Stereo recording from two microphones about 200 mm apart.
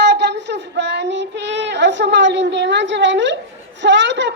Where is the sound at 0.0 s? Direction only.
60° right (ahead or behind).